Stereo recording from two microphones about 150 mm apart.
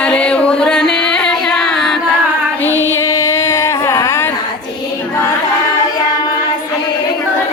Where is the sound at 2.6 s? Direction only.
15° left (ahead or behind).